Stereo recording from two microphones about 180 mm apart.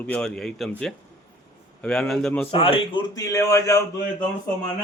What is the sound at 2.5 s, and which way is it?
Speech, 30° left (ahead or behind).